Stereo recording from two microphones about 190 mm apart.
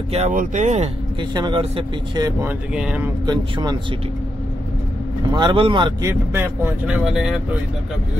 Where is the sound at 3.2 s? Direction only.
25° right (ahead or behind).